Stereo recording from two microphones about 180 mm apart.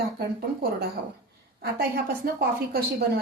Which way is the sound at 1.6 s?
60° right (ahead or behind).